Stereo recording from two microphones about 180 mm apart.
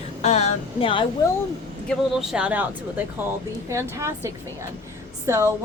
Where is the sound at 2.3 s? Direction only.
5° right (ahead or behind).